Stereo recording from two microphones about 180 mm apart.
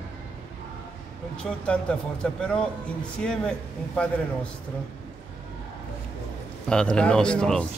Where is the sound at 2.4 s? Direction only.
5° left (ahead or behind).